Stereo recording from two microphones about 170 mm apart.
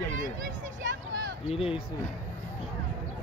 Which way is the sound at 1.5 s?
35° left (ahead or behind).